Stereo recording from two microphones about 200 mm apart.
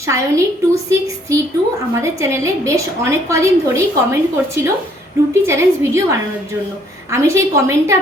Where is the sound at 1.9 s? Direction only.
15° right (ahead or behind).